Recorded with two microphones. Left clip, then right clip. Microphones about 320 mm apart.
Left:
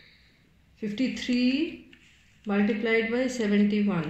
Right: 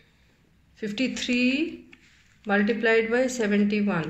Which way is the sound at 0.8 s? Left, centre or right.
Right.